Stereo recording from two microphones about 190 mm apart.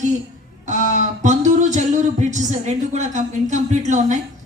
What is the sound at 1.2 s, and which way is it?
A woman's voice, 40° right (ahead or behind).